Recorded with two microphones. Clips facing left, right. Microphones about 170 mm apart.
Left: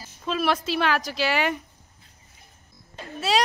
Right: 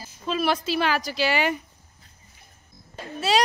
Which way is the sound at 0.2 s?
Centre (ahead or behind).